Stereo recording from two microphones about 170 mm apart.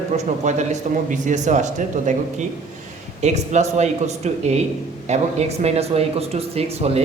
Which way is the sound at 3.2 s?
40° right (ahead or behind).